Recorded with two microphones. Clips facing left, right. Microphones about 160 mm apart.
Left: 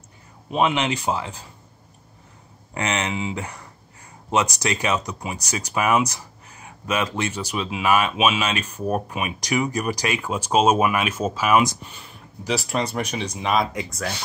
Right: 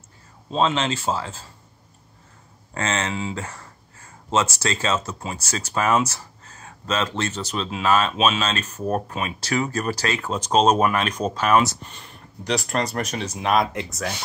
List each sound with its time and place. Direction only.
0.5 s speech: 15° left (ahead or behind)
2.7 s speech: 15° left (ahead or behind); by 14.1 s centre (ahead or behind)